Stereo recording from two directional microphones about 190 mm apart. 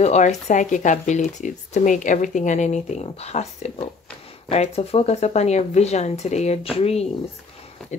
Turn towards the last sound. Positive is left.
turn(degrees=5)  # may be behind; listen again after turning